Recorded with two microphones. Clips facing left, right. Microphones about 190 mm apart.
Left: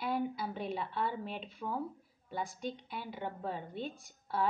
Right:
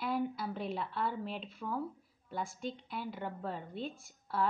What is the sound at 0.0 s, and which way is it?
A woman's voice, centre (ahead or behind).